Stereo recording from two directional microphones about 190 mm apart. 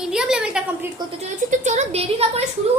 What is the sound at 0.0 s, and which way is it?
Speech, 5° right (ahead or behind).